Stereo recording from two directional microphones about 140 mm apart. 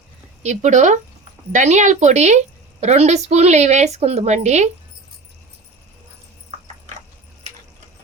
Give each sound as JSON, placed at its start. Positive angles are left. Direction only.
{"t": 0.4, "sound": "a woman's voice", "side_deg": -55}